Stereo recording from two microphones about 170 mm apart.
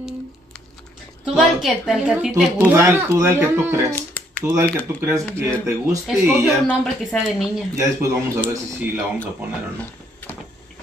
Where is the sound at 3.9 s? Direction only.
10° left (ahead or behind).